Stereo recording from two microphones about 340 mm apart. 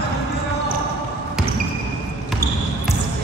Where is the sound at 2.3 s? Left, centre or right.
Centre.